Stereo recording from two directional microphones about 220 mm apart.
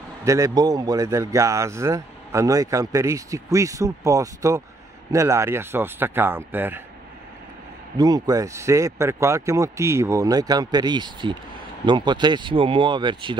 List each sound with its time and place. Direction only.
0.2 s a man's voice: 15° right (ahead or behind)
8.0 s a man's voice: 15° right (ahead or behind)